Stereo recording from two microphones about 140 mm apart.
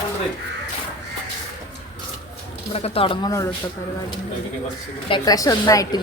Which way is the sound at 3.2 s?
25° left (ahead or behind).